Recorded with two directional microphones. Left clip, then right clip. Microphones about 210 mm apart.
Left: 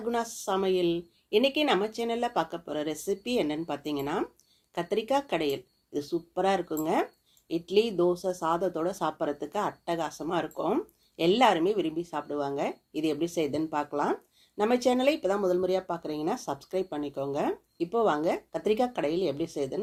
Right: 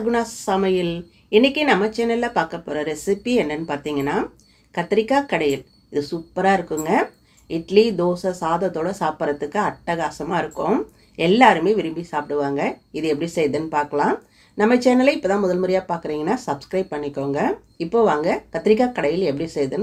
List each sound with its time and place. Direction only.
0.1 s speech: 35° left (ahead or behind)